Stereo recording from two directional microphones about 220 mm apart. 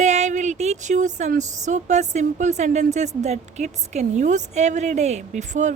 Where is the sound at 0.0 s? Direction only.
30° right (ahead or behind).